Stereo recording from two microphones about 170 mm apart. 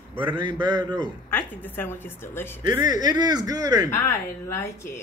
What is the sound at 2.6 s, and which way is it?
Speech, 20° right (ahead or behind).